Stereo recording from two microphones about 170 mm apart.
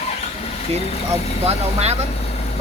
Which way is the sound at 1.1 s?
40° right (ahead or behind).